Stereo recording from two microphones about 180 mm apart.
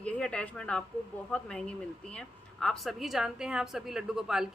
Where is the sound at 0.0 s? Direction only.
5° left (ahead or behind).